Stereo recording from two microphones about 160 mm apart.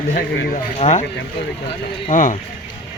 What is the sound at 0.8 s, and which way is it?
Speech, 45° left (ahead or behind).